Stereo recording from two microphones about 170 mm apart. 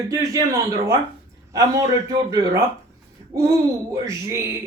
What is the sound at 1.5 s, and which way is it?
Speech, 15° right (ahead or behind).